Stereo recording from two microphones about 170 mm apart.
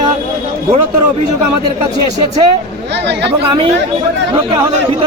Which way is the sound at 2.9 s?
90° right.